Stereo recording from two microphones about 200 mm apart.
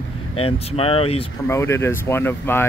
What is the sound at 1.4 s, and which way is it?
Speech, 10° left (ahead or behind).